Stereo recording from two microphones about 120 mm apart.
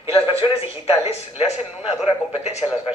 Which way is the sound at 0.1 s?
55° left (ahead or behind).